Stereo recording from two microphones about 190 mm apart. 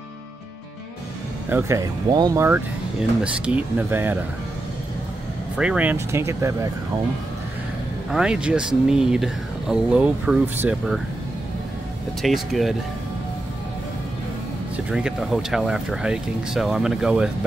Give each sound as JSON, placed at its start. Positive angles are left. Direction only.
{"t": 1.5, "sound": "speech", "side_deg": -15}
{"t": 5.6, "sound": "speech", "side_deg": -5}
{"t": 8.1, "sound": "speech", "side_deg": -5}
{"t": 12.2, "sound": "speech", "side_deg": 0}
{"t": 14.9, "sound": "speech", "side_deg": -5}